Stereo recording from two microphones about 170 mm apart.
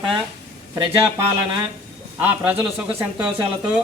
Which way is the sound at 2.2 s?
10° right (ahead or behind).